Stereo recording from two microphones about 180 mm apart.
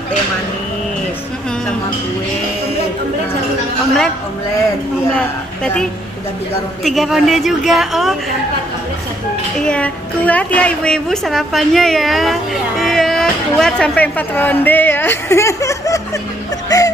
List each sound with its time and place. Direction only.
5.1 s a woman's voice: 5° left (ahead or behind)
9.6 s a woman's voice: 5° left (ahead or behind)
16.6 s a sound: 20° left (ahead or behind)